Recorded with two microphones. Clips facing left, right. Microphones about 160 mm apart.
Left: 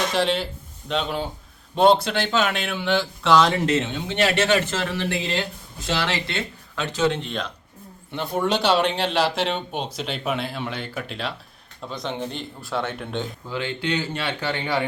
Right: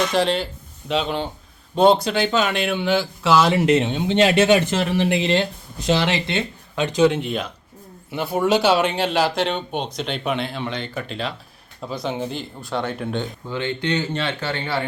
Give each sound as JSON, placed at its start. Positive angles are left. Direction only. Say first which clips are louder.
{"t": 0.1, "sound": "speech", "louder": "right 2 dB", "side_deg": 0}
{"t": 14.2, "sound": "speech", "louder": "right 1 dB", "side_deg": 15}